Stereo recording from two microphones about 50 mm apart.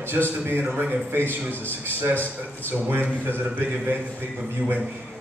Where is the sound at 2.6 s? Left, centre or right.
Right.